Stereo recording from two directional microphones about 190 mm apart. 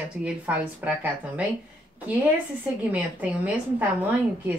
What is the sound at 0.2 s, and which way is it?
A woman's voice, 5° right (ahead or behind).